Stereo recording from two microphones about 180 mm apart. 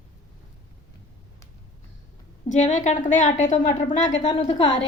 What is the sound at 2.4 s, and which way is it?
A woman's voice, 40° left (ahead or behind).